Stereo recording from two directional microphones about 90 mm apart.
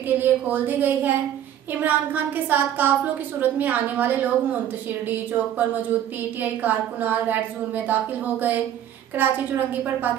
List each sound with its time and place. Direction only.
0.2 s a woman's voice: 20° right (ahead or behind)